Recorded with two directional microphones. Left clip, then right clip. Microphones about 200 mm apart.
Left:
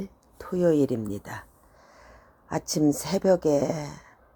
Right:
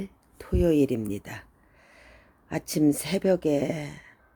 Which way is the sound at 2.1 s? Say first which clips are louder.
Left 2 dB; 10° right (ahead or behind).